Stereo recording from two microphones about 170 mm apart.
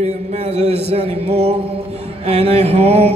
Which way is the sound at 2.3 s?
40° right (ahead or behind).